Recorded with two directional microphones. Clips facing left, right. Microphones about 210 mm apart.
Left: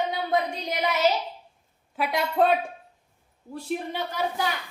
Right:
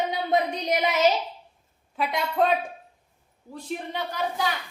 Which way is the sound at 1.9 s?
5° left (ahead or behind).